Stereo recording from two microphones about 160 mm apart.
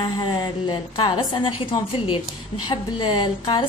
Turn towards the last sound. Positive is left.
turn(degrees=30)  # may be behind; listen again after turning